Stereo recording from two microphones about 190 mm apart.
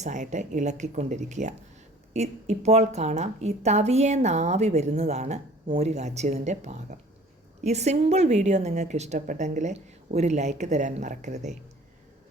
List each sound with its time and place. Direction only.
0.0 s a woman's voice: 40° right (ahead or behind)